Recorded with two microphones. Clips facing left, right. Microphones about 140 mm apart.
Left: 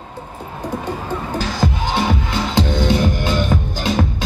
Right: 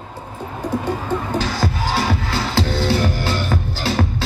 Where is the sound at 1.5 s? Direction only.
20° left (ahead or behind).